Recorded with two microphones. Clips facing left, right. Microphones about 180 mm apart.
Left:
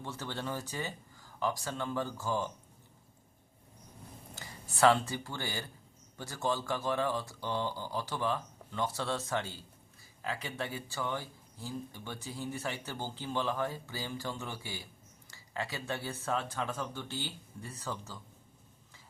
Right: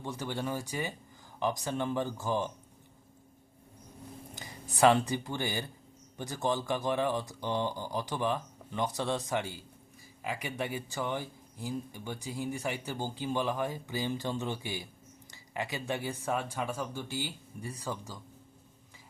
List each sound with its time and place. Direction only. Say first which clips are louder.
0.0 s speech: right 4 dB; 15° right (ahead or behind)
4.4 s speech: right 2 dB; 15° right (ahead or behind)